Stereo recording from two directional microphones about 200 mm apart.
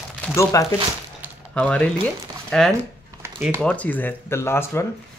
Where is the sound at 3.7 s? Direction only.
10° left (ahead or behind).